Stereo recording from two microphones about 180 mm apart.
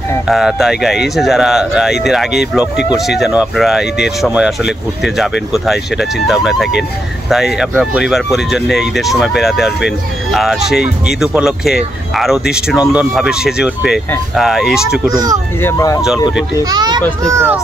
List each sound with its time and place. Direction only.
0.3 s speech: centre (ahead or behind)
15.1 s a child's voice: 20° right (ahead or behind)
15.6 s speech: 20° left (ahead or behind)
16.6 s a child's voice: 25° right (ahead or behind)